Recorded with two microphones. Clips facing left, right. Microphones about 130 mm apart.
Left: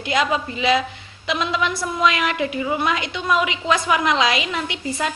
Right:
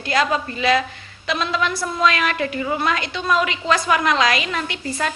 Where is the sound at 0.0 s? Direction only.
15° left (ahead or behind).